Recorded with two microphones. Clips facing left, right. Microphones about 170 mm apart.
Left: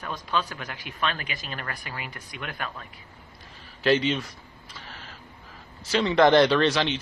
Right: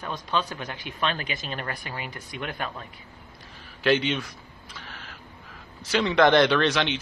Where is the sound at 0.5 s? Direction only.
25° right (ahead or behind).